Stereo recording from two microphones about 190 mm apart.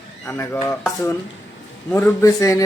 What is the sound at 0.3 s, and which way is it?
A man's voice, 10° left (ahead or behind).